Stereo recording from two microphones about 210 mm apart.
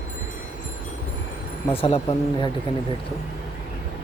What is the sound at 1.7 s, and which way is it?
Speech, 25° left (ahead or behind).